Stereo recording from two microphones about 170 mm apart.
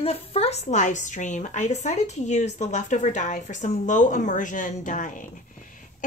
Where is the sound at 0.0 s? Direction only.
35° left (ahead or behind).